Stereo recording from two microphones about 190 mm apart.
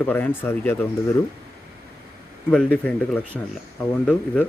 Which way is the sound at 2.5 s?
5° left (ahead or behind).